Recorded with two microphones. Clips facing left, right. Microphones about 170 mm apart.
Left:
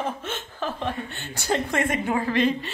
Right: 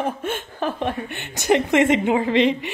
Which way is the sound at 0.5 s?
60° right (ahead or behind).